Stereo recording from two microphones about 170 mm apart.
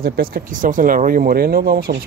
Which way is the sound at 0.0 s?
60° right (ahead or behind).